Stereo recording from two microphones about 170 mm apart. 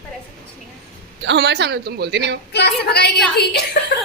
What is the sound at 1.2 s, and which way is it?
A man's voice, 90° right.